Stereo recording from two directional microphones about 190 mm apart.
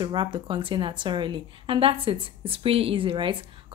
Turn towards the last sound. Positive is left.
turn(degrees=-25)  # may be behind; listen again after turning